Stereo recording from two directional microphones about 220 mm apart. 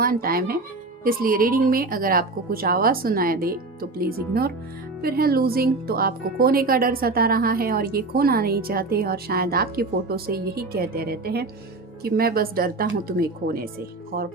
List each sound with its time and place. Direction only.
0.0 s a woman's voice: 40° right (ahead or behind)